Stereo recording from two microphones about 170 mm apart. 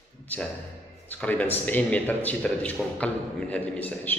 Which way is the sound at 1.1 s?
10° left (ahead or behind).